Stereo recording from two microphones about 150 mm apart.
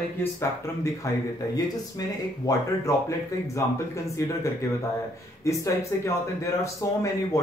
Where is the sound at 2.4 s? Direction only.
25° left (ahead or behind).